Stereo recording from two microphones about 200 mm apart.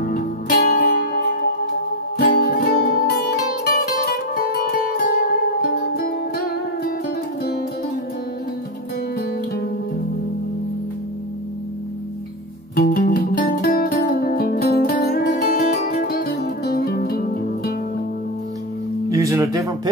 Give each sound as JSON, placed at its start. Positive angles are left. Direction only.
{"t": 0.0, "sound": "music", "side_deg": 45}
{"t": 12.7, "sound": "music", "side_deg": 45}
{"t": 19.0, "sound": "music", "side_deg": -15}